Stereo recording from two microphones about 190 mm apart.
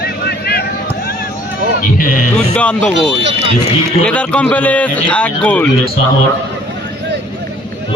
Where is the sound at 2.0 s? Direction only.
45° left (ahead or behind).